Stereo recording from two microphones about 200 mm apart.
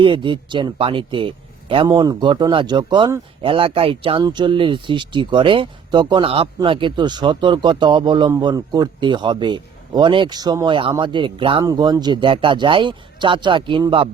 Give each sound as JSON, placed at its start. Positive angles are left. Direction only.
{"t": 0.0, "sound": "speech", "side_deg": -25}